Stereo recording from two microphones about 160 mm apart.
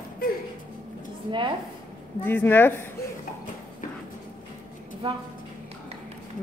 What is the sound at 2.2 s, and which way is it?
Speech, 10° left (ahead or behind).